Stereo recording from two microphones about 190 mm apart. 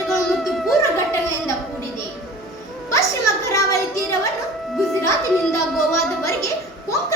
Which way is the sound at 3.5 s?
15° left (ahead or behind).